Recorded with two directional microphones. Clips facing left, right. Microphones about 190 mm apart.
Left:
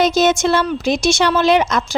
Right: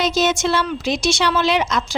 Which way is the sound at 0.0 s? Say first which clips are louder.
Left 4 dB; 50° left (ahead or behind).